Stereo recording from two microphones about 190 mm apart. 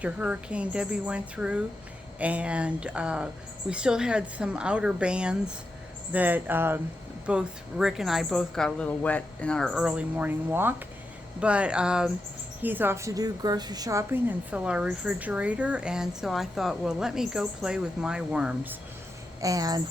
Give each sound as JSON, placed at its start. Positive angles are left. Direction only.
{"t": 0.0, "sound": "a woman's voice", "side_deg": -5}
{"t": 19.4, "sound": "speech", "side_deg": -20}